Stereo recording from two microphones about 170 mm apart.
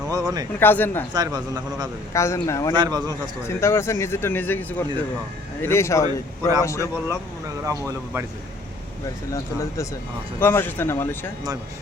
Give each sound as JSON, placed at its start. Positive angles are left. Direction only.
{"t": 0.1, "sound": "speech", "side_deg": -20}
{"t": 0.6, "sound": "a man's voice", "side_deg": 10}
{"t": 1.1, "sound": "speech", "side_deg": -25}
{"t": 2.1, "sound": "a man's voice", "side_deg": 15}
{"t": 2.7, "sound": "speech", "side_deg": -25}
{"t": 3.6, "sound": "a man's voice", "side_deg": 15}
{"t": 7.6, "sound": "speech", "side_deg": -20}
{"t": 9.3, "sound": "a man's voice", "side_deg": 15}